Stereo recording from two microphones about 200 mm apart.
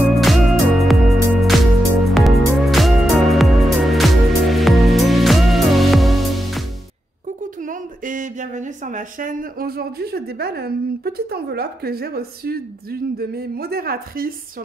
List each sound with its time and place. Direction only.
0.1 s music: centre (ahead or behind)
7.6 s a woman's voice: 40° right (ahead or behind)